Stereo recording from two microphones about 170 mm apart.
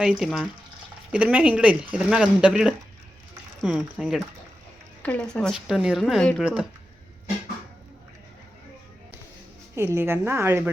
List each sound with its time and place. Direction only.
0.0 s speech: centre (ahead or behind)
9.7 s a woman's voice: 15° right (ahead or behind)